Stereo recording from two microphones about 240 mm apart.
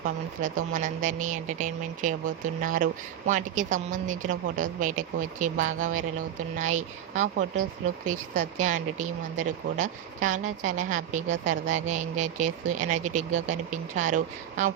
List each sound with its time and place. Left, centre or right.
0.0 s speech: right